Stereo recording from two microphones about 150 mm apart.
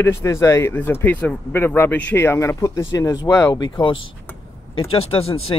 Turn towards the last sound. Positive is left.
turn(degrees=40)  # may be behind; listen again after turning